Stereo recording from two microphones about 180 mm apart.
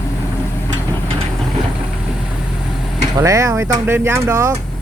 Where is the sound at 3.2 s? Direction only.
15° right (ahead or behind).